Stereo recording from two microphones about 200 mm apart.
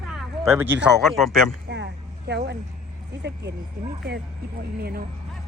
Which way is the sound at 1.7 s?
60° right (ahead or behind).